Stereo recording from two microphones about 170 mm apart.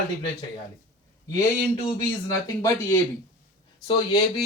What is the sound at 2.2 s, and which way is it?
Speech, 15° left (ahead or behind).